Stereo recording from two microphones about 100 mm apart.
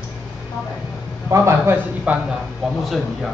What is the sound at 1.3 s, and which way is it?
Speech, 25° right (ahead or behind).